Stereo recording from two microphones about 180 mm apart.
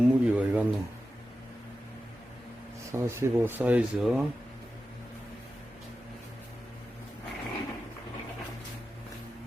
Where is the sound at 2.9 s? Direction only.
15° right (ahead or behind).